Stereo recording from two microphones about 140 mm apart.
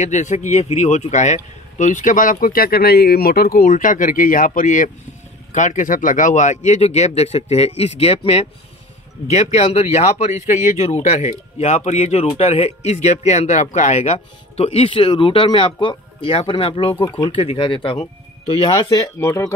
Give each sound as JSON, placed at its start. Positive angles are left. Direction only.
{"t": 0.0, "sound": "speech", "side_deg": 60}
{"t": 19.1, "sound": "speech", "side_deg": 20}